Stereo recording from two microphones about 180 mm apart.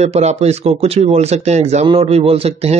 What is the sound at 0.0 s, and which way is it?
Speech, 35° right (ahead or behind).